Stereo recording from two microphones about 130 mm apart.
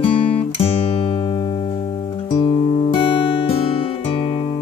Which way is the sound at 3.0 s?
40° left (ahead or behind).